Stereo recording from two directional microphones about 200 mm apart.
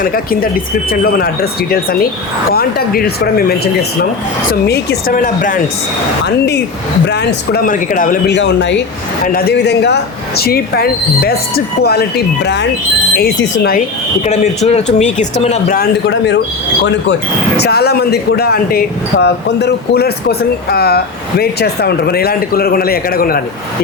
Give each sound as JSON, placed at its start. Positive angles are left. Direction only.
{"t": 0.0, "sound": "speech", "side_deg": 45}
{"t": 4.6, "sound": "speech", "side_deg": 55}
{"t": 6.2, "sound": "speech", "side_deg": 55}
{"t": 8.3, "sound": "speech", "side_deg": 60}
{"t": 9.2, "sound": "speech", "side_deg": 45}
{"t": 14.3, "sound": "speech", "side_deg": 35}
{"t": 17.6, "sound": "speech", "side_deg": 55}